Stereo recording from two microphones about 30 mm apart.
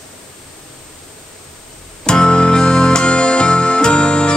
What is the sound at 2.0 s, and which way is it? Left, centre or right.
Music, left.